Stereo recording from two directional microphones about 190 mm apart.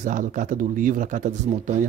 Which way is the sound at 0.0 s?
40° right (ahead or behind).